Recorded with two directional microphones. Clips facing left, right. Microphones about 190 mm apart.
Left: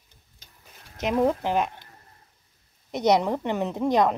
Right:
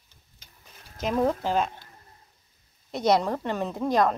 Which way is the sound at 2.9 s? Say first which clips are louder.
Left 2 dB; 15° left (ahead or behind).